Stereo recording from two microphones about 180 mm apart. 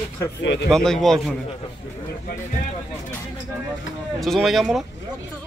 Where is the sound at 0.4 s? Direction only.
85° left.